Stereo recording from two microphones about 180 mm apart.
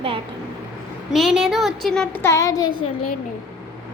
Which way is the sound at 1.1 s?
Centre (ahead or behind).